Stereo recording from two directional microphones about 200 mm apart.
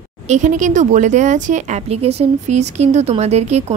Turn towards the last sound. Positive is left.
turn(degrees=-35)  # may be behind; listen again after turning